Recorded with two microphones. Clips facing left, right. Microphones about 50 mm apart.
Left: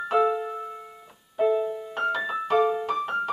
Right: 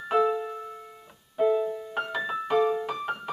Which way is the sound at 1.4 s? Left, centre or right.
Centre.